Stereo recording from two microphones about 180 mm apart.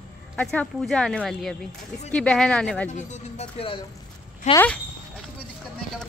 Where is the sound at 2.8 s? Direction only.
40° left (ahead or behind).